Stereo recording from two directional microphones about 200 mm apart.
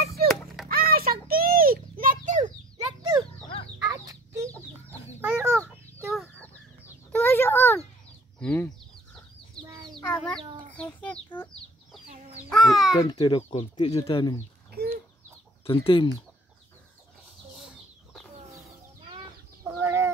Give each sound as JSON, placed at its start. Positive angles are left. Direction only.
{"t": 0.0, "sound": "music", "side_deg": -50}
{"t": 0.7, "sound": "a sound", "side_deg": -45}
{"t": 2.8, "sound": "a sound", "side_deg": -20}
{"t": 3.9, "sound": "chicken", "side_deg": -15}
{"t": 5.5, "sound": "chicken", "side_deg": 5}
{"t": 7.1, "sound": "a sound", "side_deg": 10}
{"t": 10.0, "sound": "chicken", "side_deg": 5}
{"t": 10.7, "sound": "a sound", "side_deg": 5}
{"t": 12.1, "sound": "chicken", "side_deg": -35}
{"t": 12.4, "sound": "babbling", "side_deg": 0}
{"t": 12.9, "sound": "speech", "side_deg": 15}
{"t": 15.6, "sound": "speech", "side_deg": 25}
{"t": 17.6, "sound": "chicken", "side_deg": 0}
{"t": 19.7, "sound": "chicken", "side_deg": -15}